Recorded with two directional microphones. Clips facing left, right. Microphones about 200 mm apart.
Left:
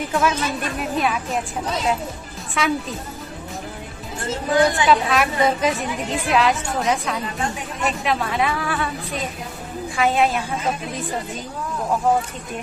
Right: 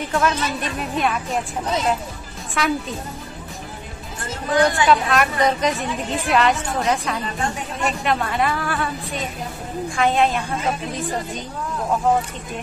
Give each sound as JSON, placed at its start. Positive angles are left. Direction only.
{"t": 0.1, "sound": "a woman's voice", "side_deg": 5}
{"t": 2.5, "sound": "a woman's voice", "side_deg": 0}
{"t": 4.2, "sound": "speech", "side_deg": 20}
{"t": 4.8, "sound": "a woman's voice", "side_deg": 0}